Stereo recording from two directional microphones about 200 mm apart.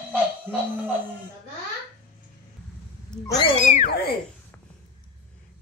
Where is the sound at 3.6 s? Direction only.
40° left (ahead or behind).